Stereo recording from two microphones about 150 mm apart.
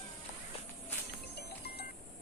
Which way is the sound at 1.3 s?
90° left.